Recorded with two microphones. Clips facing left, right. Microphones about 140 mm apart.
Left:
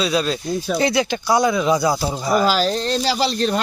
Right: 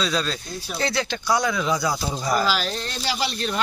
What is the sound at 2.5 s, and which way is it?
Speech, 40° left (ahead or behind).